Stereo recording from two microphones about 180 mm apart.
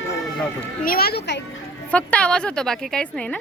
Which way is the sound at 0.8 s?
55° left (ahead or behind).